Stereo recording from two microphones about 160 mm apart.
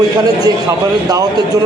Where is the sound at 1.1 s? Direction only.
25° right (ahead or behind).